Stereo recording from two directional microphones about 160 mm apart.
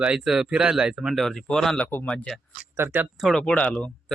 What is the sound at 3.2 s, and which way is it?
Speech, 5° left (ahead or behind).